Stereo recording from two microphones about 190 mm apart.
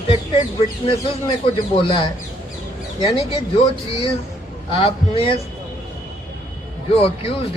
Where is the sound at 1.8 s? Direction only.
25° left (ahead or behind).